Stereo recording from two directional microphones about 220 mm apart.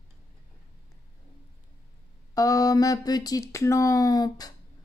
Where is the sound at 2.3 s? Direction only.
15° left (ahead or behind).